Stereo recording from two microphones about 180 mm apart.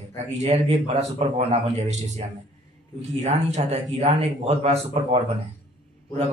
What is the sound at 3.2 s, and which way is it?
A man's voice, 40° right (ahead or behind).